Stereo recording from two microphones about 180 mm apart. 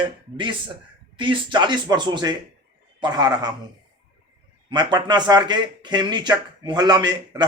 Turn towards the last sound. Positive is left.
turn(degrees=-20)  # may be behind; listen again after turning